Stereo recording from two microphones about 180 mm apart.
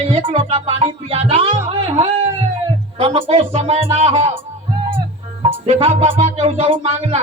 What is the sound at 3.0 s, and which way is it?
Speech, 30° right (ahead or behind).